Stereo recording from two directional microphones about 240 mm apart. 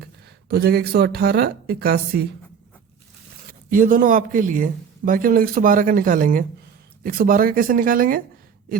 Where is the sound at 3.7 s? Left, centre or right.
Right.